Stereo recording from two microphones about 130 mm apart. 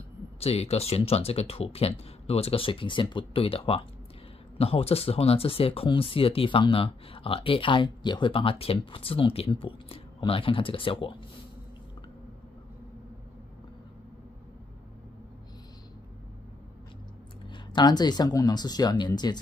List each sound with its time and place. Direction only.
0.4 s speech: 50° left (ahead or behind)
17.5 s speech: 35° left (ahead or behind)